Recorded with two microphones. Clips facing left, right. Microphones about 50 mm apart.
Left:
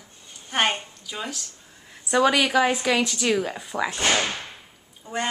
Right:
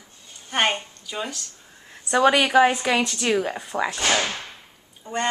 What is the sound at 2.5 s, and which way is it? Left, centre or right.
A woman's voice, centre.